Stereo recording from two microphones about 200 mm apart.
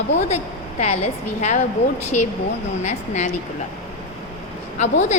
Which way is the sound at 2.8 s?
35° left (ahead or behind).